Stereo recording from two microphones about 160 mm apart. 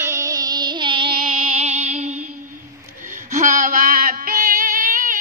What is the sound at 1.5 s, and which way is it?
Music, 40° right (ahead or behind).